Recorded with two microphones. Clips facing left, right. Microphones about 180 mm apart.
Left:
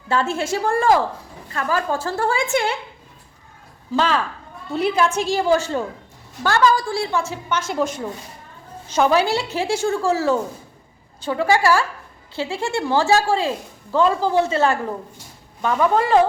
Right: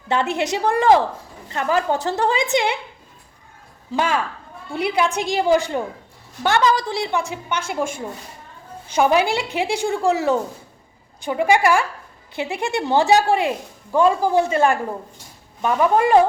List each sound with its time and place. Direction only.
0.1 s a woman's voice: 20° right (ahead or behind)
3.9 s a woman's voice: 10° right (ahead or behind)